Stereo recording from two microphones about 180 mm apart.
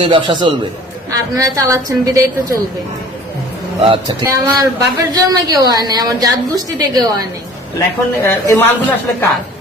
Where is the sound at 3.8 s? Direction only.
25° right (ahead or behind).